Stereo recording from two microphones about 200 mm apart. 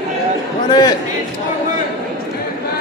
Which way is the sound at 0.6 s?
20° left (ahead or behind).